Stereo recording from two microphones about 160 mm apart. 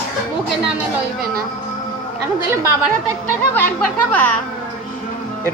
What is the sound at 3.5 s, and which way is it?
Speech, 10° left (ahead or behind).